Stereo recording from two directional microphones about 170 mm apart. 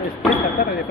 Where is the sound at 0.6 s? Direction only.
55° left (ahead or behind).